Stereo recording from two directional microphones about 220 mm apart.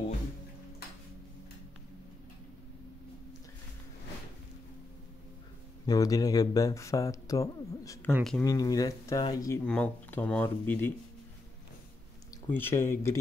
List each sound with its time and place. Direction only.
5.9 s speech: 15° left (ahead or behind)
8.1 s speech: centre (ahead or behind)
8.5 s speech: 15° left (ahead or behind)
12.4 s speech: 10° left (ahead or behind)